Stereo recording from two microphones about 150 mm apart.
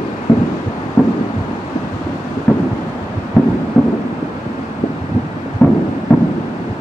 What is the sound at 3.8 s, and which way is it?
Thunder, 5° left (ahead or behind).